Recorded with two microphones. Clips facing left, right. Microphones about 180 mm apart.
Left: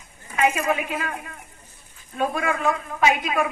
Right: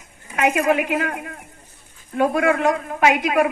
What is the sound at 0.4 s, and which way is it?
A woman's voice, 70° right (ahead or behind).